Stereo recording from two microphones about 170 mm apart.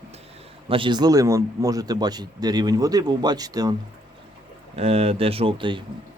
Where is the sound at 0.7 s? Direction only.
30° right (ahead or behind).